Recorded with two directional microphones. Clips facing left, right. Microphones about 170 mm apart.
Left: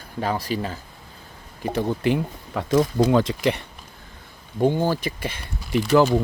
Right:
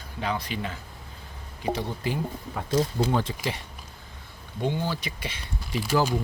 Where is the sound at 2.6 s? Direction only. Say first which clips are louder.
Left 6 dB; 90° left.